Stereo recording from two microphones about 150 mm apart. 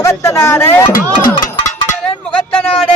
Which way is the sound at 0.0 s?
20° left (ahead or behind).